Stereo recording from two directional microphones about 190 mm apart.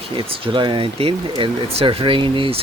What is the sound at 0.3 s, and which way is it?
Speech, 25° right (ahead or behind).